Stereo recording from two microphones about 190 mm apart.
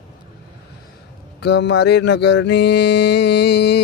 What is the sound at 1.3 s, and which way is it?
Mantra, 60° left (ahead or behind).